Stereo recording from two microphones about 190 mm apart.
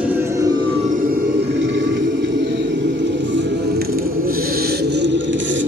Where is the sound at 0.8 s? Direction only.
45° right (ahead or behind); by 5.6 s 75° right (ahead or behind).